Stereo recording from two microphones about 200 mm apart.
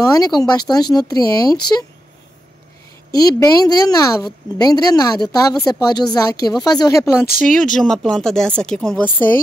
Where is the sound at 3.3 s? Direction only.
20° left (ahead or behind).